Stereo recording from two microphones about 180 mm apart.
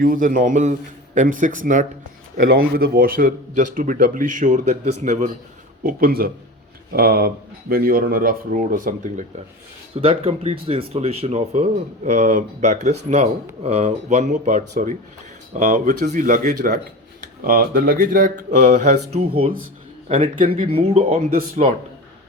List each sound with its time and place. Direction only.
0.0 s a man's voice: 50° right (ahead or behind)
5.8 s speech: 55° right (ahead or behind)
9.9 s a man's voice: 30° right (ahead or behind)
21.2 s a man's voice: 55° right (ahead or behind)